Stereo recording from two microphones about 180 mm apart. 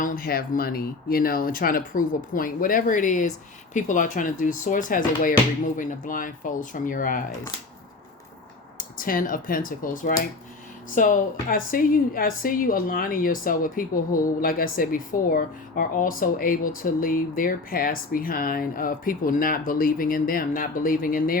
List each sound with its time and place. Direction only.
0.0 s a woman's voice: 55° left (ahead or behind)
9.0 s a woman's voice: 50° left (ahead or behind)